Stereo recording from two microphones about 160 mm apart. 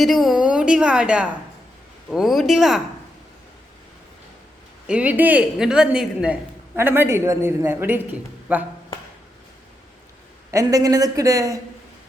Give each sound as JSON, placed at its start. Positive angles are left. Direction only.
{"t": 0.0, "sound": "a woman's voice", "side_deg": 0}
{"t": 4.9, "sound": "a woman's voice", "side_deg": -10}
{"t": 10.5, "sound": "a woman's voice", "side_deg": -20}